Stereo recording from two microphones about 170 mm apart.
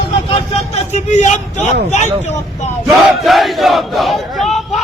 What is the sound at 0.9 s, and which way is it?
Speech, 45° left (ahead or behind).